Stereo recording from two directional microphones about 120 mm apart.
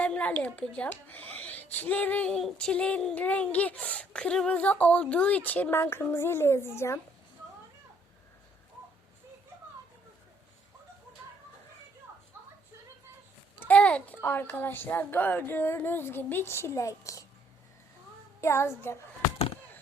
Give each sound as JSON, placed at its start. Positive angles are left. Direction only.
{"t": 0.0, "sound": "a child's voice", "side_deg": 10}
{"t": 13.6, "sound": "speech", "side_deg": 10}
{"t": 18.3, "sound": "a child's voice", "side_deg": 25}